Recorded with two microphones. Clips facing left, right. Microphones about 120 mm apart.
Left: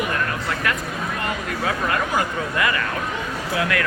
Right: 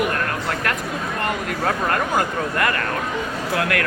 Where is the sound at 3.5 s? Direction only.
55° right (ahead or behind).